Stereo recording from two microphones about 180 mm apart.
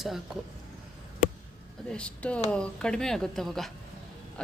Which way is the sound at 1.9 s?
5° left (ahead or behind).